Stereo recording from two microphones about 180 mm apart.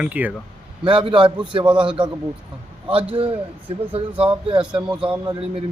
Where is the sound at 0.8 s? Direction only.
25° right (ahead or behind).